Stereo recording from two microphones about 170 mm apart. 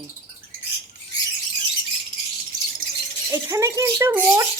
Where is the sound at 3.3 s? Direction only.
20° right (ahead or behind).